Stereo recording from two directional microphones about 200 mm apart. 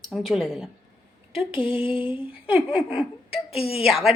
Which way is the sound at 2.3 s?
5° right (ahead or behind).